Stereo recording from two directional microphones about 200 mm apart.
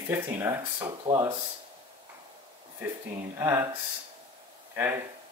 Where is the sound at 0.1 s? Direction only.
15° right (ahead or behind).